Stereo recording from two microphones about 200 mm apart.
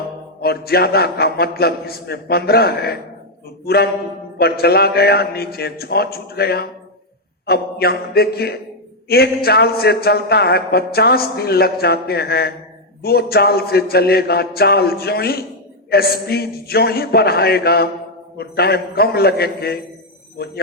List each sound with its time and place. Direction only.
0.4 s a man's voice: 50° left (ahead or behind)
4.4 s a man's voice: 50° left (ahead or behind)